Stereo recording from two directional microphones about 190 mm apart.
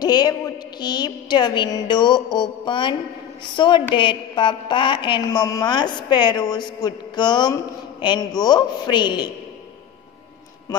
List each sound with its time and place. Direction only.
0.0 s a man's voice: 20° left (ahead or behind)